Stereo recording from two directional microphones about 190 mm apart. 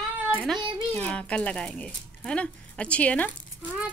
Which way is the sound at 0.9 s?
5° left (ahead or behind).